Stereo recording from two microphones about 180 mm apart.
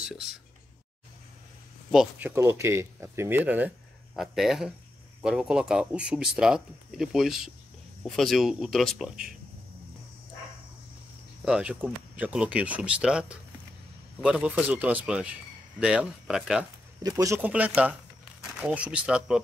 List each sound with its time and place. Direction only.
1.9 s speech: 5° right (ahead or behind)
11.4 s speech: 5° right (ahead or behind)
17.0 s speech: 20° right (ahead or behind)